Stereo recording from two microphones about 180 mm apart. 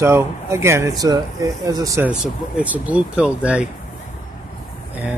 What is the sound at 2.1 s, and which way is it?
Speech, 5° right (ahead or behind).